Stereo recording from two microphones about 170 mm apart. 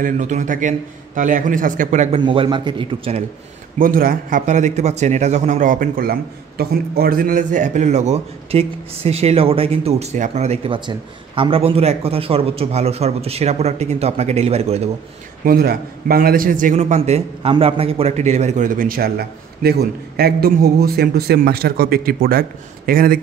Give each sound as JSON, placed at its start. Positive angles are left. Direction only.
{"t": 0.0, "sound": "a man's voice", "side_deg": -45}
{"t": 2.2, "sound": "a man's voice", "side_deg": -30}
{"t": 3.7, "sound": "a man's voice", "side_deg": -55}
{"t": 15.4, "sound": "a man's voice", "side_deg": -60}